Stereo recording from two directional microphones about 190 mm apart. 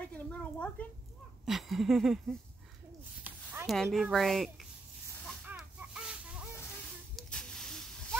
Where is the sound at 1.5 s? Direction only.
Centre (ahead or behind).